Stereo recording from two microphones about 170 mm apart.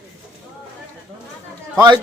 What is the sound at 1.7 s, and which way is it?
Speech, 25° right (ahead or behind).